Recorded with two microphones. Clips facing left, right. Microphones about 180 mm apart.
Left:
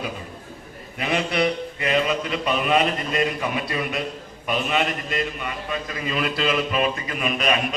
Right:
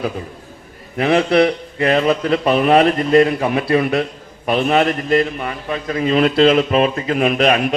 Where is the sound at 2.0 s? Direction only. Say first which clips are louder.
Right 8 dB; 40° right (ahead or behind).